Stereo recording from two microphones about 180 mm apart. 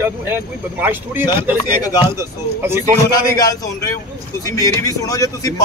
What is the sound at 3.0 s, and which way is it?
Speech, 20° left (ahead or behind).